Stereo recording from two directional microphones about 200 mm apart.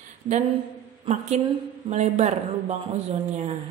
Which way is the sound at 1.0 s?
35° right (ahead or behind).